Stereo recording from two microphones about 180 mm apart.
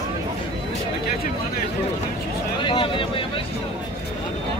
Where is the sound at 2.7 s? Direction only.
30° left (ahead or behind).